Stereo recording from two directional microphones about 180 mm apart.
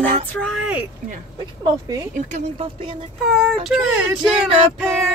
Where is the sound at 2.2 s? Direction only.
45° right (ahead or behind).